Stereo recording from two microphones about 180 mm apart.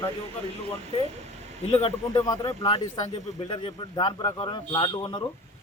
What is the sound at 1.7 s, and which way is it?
Speech, 30° left (ahead or behind).